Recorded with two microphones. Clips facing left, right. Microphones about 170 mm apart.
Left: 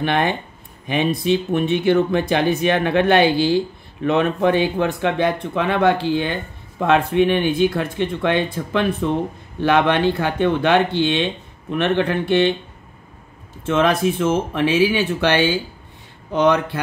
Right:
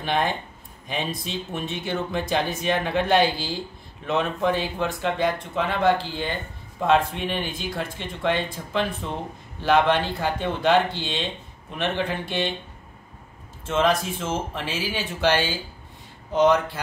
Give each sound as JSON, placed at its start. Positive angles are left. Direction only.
{"t": 0.0, "sound": "speech", "side_deg": 65}
{"t": 13.7, "sound": "speech", "side_deg": 65}